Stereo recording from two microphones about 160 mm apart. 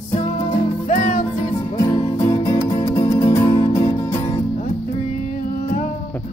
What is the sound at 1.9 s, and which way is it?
Music, 30° left (ahead or behind).